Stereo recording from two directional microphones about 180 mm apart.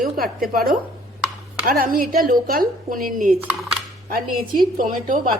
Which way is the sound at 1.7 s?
50° right (ahead or behind).